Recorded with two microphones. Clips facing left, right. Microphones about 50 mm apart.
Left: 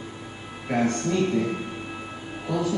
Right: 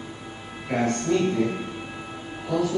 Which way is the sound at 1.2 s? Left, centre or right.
Right.